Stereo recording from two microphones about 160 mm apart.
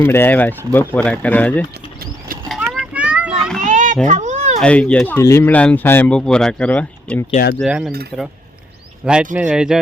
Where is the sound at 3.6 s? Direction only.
50° right (ahead or behind).